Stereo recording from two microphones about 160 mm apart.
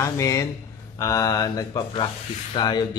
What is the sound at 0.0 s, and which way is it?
Mantra, 20° left (ahead or behind).